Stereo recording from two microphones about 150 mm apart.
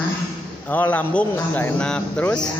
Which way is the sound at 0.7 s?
10° left (ahead or behind).